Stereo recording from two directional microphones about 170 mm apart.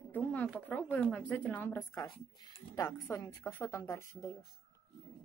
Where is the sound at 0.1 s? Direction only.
10° left (ahead or behind).